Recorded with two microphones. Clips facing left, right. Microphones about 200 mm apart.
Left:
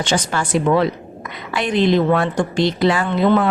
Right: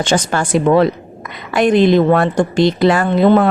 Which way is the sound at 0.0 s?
50° right (ahead or behind).